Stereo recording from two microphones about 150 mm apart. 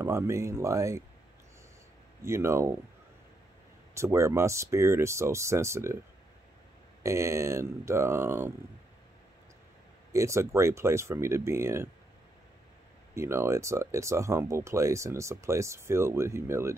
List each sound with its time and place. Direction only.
0.0 s speech: 20° right (ahead or behind)
2.2 s speech: 15° right (ahead or behind)
3.9 s speech: 20° right (ahead or behind)
7.0 s speech: 20° right (ahead or behind)
10.1 s speech: 20° right (ahead or behind)
13.1 s speech: 20° right (ahead or behind)